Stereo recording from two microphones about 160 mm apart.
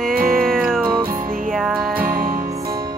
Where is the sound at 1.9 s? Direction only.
65° right (ahead or behind).